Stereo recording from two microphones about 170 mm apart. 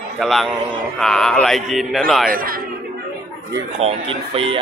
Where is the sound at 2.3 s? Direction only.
60° right (ahead or behind).